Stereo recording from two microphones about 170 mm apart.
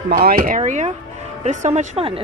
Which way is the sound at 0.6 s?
45° right (ahead or behind).